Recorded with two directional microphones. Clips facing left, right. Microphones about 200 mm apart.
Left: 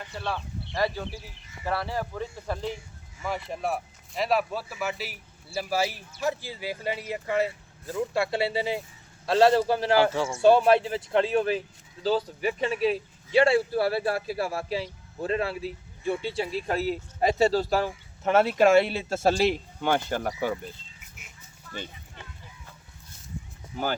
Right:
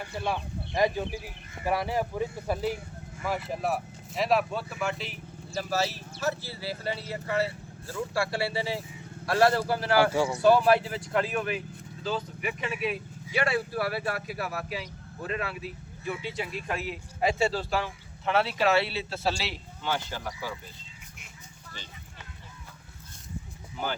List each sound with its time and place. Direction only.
0.0 s speech: 10° right (ahead or behind); by 20.5 s 55° left (ahead or behind)